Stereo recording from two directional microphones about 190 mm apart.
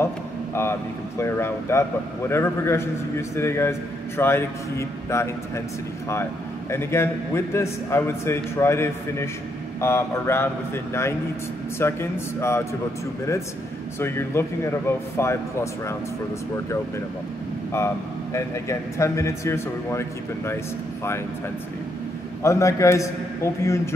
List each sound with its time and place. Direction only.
0.6 s speech: 15° left (ahead or behind)
6.7 s speech: 15° left (ahead or behind)
13.9 s speech: 15° left (ahead or behind)
17.7 s speech: 15° left (ahead or behind)
22.4 s speech: 15° left (ahead or behind)